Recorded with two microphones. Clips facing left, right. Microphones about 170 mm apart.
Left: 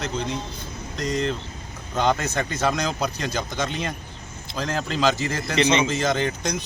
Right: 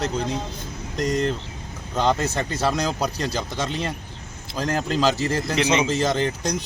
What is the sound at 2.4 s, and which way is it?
Speech, 35° right (ahead or behind).